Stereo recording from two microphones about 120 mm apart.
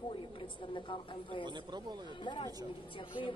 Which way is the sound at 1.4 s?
40° right (ahead or behind).